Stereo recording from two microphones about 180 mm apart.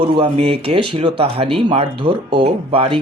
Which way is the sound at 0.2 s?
35° right (ahead or behind).